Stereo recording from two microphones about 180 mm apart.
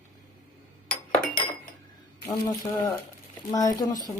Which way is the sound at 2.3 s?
20° left (ahead or behind).